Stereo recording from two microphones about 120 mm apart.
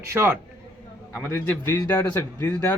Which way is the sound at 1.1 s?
10° left (ahead or behind).